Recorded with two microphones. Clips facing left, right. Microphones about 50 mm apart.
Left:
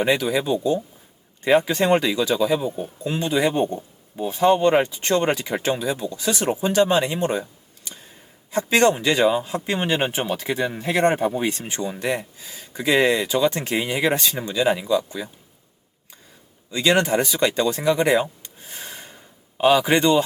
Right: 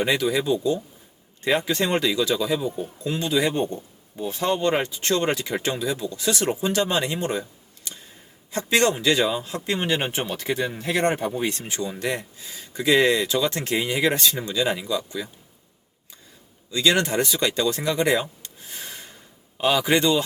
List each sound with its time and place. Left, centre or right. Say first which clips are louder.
0.0 s speech: left 2 dB; centre
8.5 s speech: left 3 dB; centre
16.7 s speech: left 2 dB; centre
18.7 s a sound: left 1 dB; centre